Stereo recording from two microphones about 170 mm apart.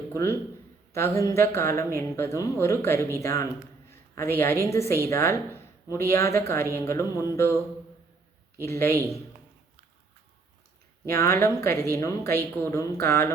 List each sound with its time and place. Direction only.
0.1 s a man's voice: 15° left (ahead or behind)
4.6 s a woman's voice: 15° left (ahead or behind)
8.6 s speech: 15° left (ahead or behind)
11.1 s speech: 15° left (ahead or behind)